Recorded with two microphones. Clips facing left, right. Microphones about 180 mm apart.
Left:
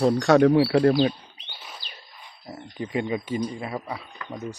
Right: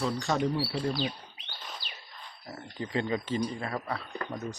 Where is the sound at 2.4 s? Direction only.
20° left (ahead or behind).